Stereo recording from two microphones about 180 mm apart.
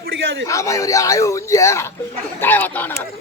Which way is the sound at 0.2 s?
90° right.